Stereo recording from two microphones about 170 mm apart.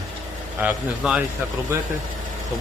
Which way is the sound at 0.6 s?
5° right (ahead or behind).